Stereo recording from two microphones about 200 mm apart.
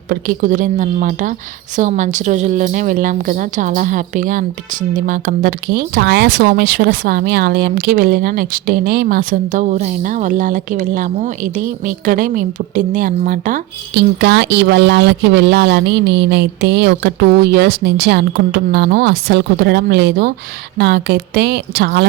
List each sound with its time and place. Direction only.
0.1 s a woman's voice: 40° right (ahead or behind)
13.9 s speech: 60° right (ahead or behind)